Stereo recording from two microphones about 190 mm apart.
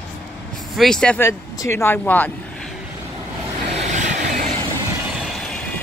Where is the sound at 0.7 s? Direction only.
5° left (ahead or behind).